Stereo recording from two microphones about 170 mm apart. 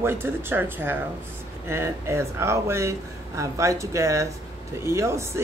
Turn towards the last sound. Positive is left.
turn(degrees=-15)  # may be behind; listen again after turning